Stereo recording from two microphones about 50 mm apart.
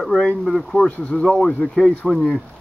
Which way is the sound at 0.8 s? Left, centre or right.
Left.